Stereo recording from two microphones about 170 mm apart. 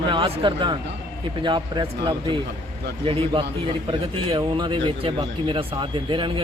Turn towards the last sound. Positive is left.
turn(degrees=-30)  # may be behind; listen again after turning